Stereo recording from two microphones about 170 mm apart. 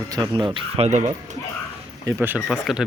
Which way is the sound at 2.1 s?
10° right (ahead or behind).